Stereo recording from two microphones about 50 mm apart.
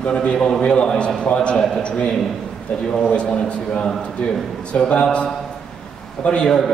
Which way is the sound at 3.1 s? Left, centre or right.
Left.